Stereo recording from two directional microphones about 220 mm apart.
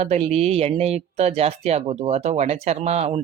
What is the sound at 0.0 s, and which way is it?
Speech, 30° right (ahead or behind).